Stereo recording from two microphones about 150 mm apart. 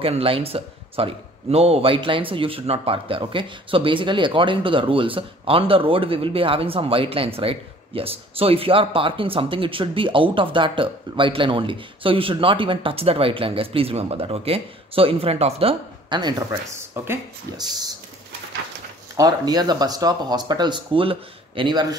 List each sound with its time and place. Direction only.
0.0 s a man's voice: 40° right (ahead or behind)
16.1 s speech: 30° right (ahead or behind)
16.9 s speech: 15° right (ahead or behind)
19.1 s speech: 25° right (ahead or behind)